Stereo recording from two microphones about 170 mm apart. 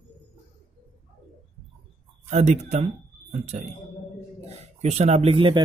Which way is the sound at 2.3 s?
45° right (ahead or behind).